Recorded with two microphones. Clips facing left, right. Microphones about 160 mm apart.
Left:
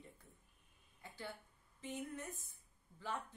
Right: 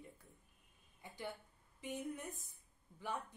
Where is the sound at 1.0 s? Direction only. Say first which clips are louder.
Right 2 dB; 15° right (ahead or behind).